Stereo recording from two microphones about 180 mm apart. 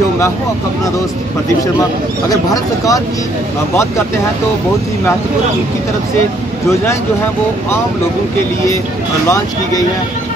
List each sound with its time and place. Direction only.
1.8 s speech: 20° left (ahead or behind)